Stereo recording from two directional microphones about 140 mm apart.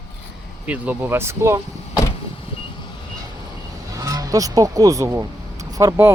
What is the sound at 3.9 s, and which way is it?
Speech, 25° right (ahead or behind).